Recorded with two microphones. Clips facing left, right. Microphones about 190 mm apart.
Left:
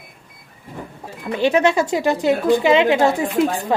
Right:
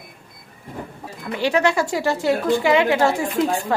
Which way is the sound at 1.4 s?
20° left (ahead or behind).